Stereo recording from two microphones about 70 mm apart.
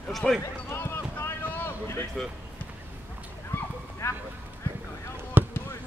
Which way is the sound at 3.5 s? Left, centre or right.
Left.